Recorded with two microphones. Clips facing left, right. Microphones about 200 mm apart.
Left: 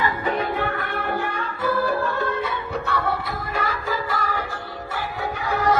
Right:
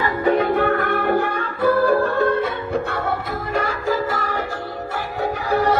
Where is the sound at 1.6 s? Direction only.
55° right (ahead or behind).